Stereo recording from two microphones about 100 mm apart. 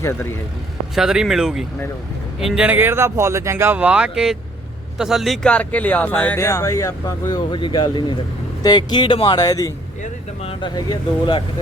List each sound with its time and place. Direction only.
0.0 s a man's voice: 25° left (ahead or behind)
0.9 s speech: 5° right (ahead or behind)
2.6 s speech: 20° right (ahead or behind)
3.8 s speech: 10° right (ahead or behind)
5.5 s speech: 15° left (ahead or behind)
6.3 s speech: 30° left (ahead or behind)